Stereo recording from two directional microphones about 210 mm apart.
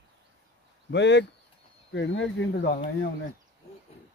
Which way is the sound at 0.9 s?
55° left (ahead or behind).